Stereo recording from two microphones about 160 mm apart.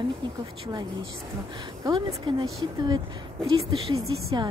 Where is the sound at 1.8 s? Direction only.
25° right (ahead or behind).